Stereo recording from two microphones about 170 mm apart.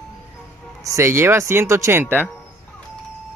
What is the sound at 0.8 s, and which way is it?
Speech, 15° right (ahead or behind).